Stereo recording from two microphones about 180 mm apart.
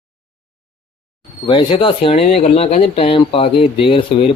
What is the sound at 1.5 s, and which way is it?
Speech, 30° left (ahead or behind).